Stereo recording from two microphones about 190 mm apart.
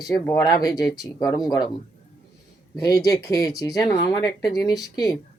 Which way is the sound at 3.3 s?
20° left (ahead or behind).